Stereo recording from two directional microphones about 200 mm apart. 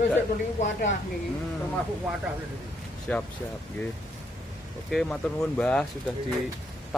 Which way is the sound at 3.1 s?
5° left (ahead or behind).